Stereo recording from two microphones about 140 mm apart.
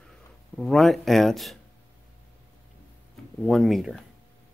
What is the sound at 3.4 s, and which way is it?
Speech, centre (ahead or behind).